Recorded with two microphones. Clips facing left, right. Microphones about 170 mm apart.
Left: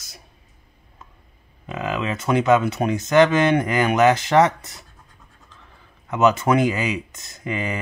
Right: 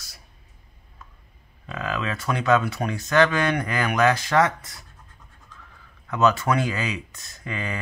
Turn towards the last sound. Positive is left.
turn(degrees=20)  # may be behind; listen again after turning